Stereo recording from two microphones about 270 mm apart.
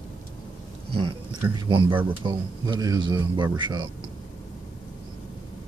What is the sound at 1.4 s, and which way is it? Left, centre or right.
Speech, centre.